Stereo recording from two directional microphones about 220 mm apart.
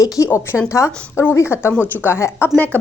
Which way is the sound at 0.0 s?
15° left (ahead or behind).